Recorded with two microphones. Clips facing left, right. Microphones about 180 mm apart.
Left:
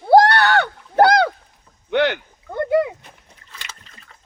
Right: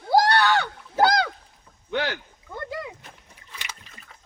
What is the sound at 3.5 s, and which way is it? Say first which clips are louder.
Boat: even; 10° right (ahead or behind).